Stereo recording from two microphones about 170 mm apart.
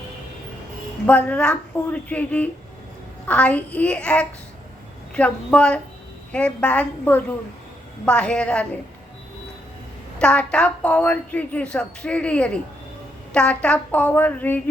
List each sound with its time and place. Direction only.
1.0 s a woman's voice: 10° left (ahead or behind)
10.2 s a woman's voice: 5° left (ahead or behind)